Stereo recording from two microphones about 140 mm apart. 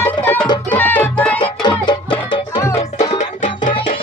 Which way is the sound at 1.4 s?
30° left (ahead or behind).